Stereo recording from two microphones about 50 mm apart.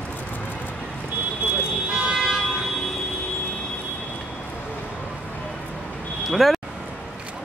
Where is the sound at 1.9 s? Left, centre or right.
Centre.